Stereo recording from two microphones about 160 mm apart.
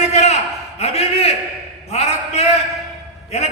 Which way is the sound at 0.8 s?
40° left (ahead or behind).